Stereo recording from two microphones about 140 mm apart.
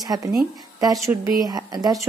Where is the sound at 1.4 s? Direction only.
25° right (ahead or behind).